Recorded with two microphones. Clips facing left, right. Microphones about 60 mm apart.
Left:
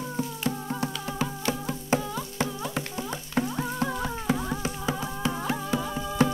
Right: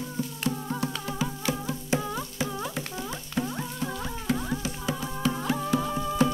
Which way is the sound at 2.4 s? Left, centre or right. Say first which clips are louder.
Left 3 dB; left.